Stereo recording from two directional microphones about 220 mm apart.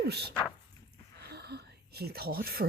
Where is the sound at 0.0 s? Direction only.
50° right (ahead or behind).